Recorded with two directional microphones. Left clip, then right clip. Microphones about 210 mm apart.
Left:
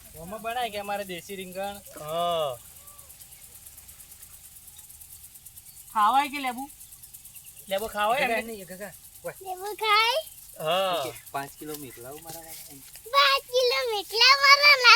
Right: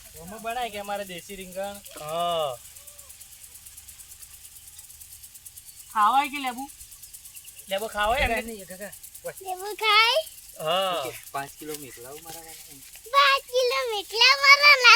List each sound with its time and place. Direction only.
0.4 s speech: 35° left (ahead or behind)
2.0 s speech: 15° left (ahead or behind)
5.9 s a child's voice: centre (ahead or behind)
7.7 s a child's voice: centre (ahead or behind)
8.3 s speech: 35° left (ahead or behind)
9.5 s a child's voice: 35° right (ahead or behind)
10.6 s speech: 10° left (ahead or behind)
11.3 s speech: 25° left (ahead or behind)
13.1 s a child's voice: 5° left (ahead or behind)